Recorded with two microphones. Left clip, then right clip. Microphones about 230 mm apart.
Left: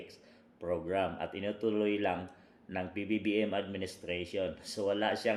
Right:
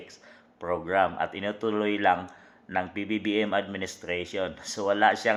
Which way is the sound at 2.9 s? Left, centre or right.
Right.